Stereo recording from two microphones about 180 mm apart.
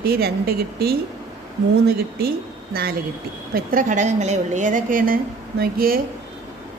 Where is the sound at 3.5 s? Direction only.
45° right (ahead or behind).